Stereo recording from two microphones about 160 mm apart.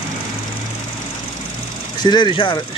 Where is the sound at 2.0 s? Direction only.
30° left (ahead or behind).